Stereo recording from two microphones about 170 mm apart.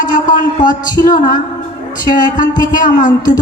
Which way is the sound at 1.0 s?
50° left (ahead or behind).